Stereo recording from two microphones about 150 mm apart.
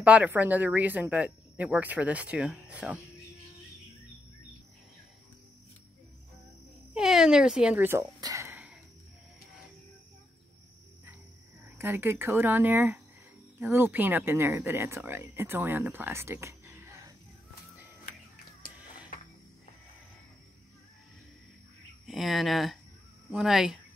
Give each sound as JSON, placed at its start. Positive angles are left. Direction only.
{"t": 0.0, "sound": "speech", "side_deg": -10}
{"t": 6.9, "sound": "speech", "side_deg": -5}
{"t": 11.8, "sound": "speech", "side_deg": -15}
{"t": 22.0, "sound": "speech", "side_deg": 0}